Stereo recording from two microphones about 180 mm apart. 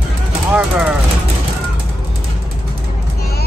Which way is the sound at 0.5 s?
10° right (ahead or behind).